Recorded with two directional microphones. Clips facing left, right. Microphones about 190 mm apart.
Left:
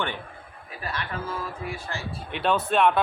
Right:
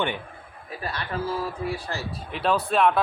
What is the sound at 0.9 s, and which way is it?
A man's voice, 35° right (ahead or behind).